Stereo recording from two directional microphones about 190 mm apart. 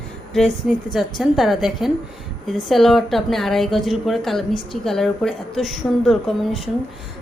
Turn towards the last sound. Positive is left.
turn(degrees=0)  # may be behind; listen again after turning